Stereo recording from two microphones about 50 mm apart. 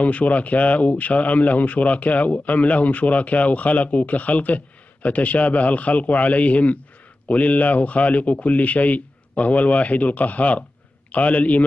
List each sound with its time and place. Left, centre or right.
0.0 s speech: left